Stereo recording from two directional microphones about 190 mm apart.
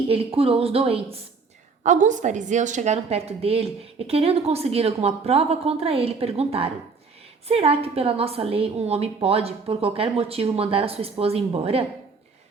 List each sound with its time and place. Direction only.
0.1 s a woman's voice: 30° right (ahead or behind)
1.8 s a woman's voice: 40° right (ahead or behind)